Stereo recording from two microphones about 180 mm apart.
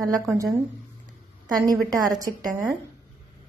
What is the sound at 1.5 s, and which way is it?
A woman's voice, 20° right (ahead or behind).